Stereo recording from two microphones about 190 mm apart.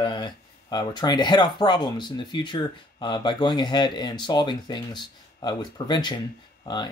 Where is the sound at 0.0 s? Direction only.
25° left (ahead or behind).